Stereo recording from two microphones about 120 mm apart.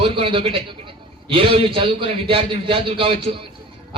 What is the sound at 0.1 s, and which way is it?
A man's voice, 50° right (ahead or behind).